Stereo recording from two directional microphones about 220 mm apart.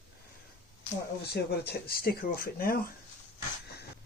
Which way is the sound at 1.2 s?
45° left (ahead or behind).